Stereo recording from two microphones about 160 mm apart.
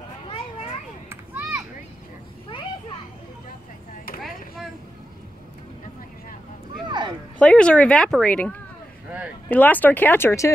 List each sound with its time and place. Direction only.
1.0 s children playing: 15° right (ahead or behind)
6.9 s a sound: 30° right (ahead or behind)
7.3 s speech: 5° left (ahead or behind)